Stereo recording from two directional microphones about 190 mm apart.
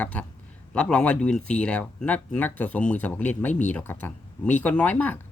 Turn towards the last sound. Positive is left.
turn(degrees=10)  # may be behind; listen again after turning